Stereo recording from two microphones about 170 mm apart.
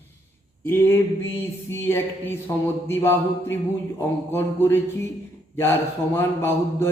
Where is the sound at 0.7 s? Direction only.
15° left (ahead or behind).